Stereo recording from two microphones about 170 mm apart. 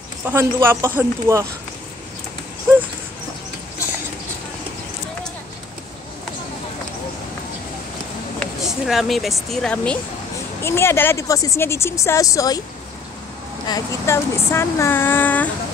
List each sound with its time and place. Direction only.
0.3 s speech: 15° right (ahead or behind)
8.4 s speech: centre (ahead or behind); by 12.6 s 20° left (ahead or behind)
13.7 s speech: 20° left (ahead or behind)